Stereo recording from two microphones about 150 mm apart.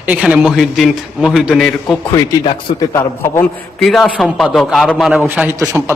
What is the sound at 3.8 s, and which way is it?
A man's voice, 5° left (ahead or behind).